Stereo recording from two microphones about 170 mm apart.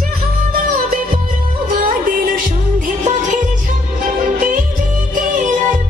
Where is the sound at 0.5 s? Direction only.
60° right (ahead or behind).